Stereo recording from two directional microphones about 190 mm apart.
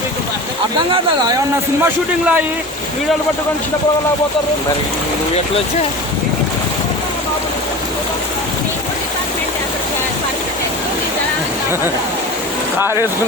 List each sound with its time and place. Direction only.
0.9 s speech: 20° right (ahead or behind)
1.8 s a man's voice: 10° right (ahead or behind)
12.8 s a man's voice: 10° right (ahead or behind)